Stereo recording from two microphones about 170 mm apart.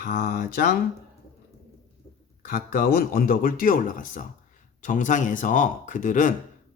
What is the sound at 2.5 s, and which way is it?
Speech, 55° left (ahead or behind).